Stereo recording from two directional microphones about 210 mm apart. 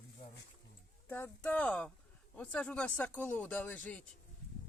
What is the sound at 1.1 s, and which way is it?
Speech, 10° left (ahead or behind).